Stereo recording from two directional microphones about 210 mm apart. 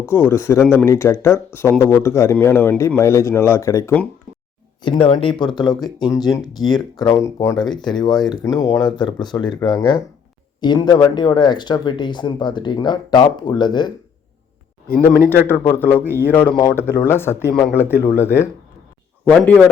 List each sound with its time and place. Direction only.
0.1 s speech: 10° left (ahead or behind)
4.8 s speech: 25° left (ahead or behind)
15.3 s speech: 10° left (ahead or behind)
19.2 s speech: 5° left (ahead or behind)